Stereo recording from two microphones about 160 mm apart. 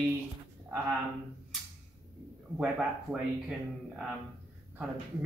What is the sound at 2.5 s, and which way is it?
A man's voice, 5° right (ahead or behind).